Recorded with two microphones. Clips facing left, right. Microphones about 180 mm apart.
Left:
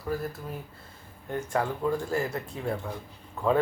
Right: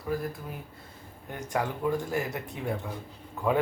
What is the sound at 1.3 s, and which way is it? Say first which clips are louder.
Speech: left 2 dB; 15° right (ahead or behind).